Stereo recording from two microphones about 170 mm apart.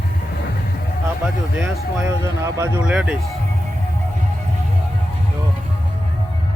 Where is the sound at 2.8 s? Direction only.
5° right (ahead or behind).